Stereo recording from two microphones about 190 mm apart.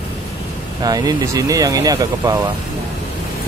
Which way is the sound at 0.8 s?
20° right (ahead or behind).